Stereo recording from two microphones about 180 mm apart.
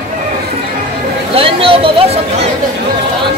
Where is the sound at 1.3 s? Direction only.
30° right (ahead or behind).